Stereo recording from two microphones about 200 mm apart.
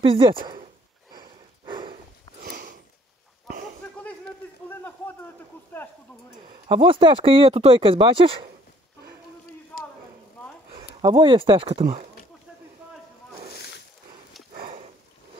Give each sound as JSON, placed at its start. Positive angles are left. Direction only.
{"t": 0.0, "sound": "speech", "side_deg": -25}
{"t": 1.1, "sound": "a sound", "side_deg": -20}
{"t": 2.4, "sound": "sniff", "side_deg": -45}
{"t": 4.6, "sound": "a sound", "side_deg": 10}
{"t": 6.4, "sound": "speech", "side_deg": -25}
{"t": 11.0, "sound": "speech", "side_deg": -25}
{"t": 14.5, "sound": "sniff", "side_deg": -40}